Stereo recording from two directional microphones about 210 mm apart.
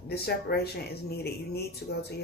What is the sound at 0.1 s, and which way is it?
Speech, 50° left (ahead or behind).